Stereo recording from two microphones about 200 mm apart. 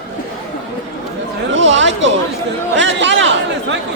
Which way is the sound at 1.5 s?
65° right (ahead or behind).